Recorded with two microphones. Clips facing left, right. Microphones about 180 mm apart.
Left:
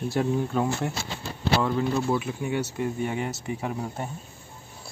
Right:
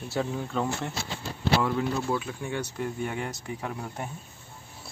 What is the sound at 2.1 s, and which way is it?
Speech, 10° left (ahead or behind).